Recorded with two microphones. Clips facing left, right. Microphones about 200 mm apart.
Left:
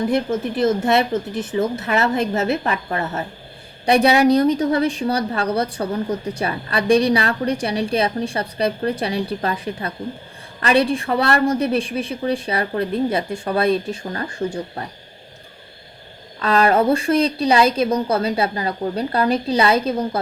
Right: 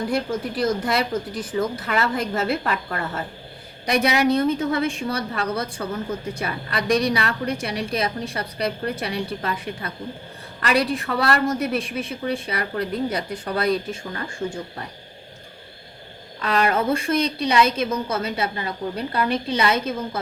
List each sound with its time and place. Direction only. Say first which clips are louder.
0.1 s a woman's voice: left 4 dB; 25° left (ahead or behind)
16.4 s a woman's voice: left 5 dB; 30° left (ahead or behind)